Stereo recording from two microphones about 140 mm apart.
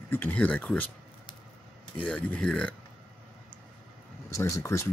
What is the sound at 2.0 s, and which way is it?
Speech, 5° left (ahead or behind).